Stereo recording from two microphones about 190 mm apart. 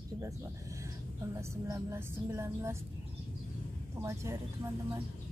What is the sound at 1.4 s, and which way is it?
Speech, 15° right (ahead or behind).